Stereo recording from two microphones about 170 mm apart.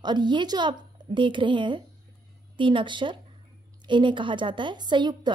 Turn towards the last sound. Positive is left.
turn(degrees=-25)  # may be behind; listen again after turning